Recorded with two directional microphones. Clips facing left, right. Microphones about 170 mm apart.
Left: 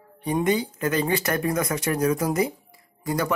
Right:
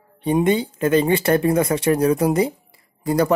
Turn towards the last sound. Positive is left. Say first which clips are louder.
# right 7 dB
turn(degrees=-35)  # may be behind; listen again after turning